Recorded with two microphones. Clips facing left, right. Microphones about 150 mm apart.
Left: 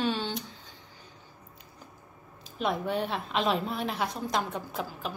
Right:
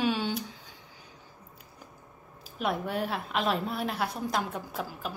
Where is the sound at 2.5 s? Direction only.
5° right (ahead or behind).